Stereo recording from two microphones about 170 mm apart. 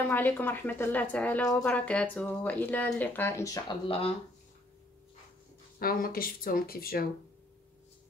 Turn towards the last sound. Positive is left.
turn(degrees=60)  # may be behind; listen again after turning